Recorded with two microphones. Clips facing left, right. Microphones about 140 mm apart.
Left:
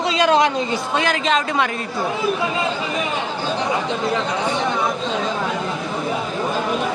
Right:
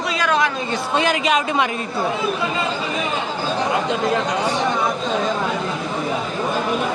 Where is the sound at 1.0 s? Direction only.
15° right (ahead or behind).